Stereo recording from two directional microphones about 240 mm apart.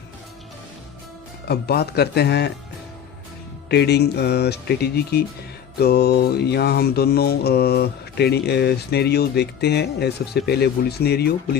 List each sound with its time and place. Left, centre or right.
1.5 s speech: left
3.7 s speech: left
5.8 s mantra: left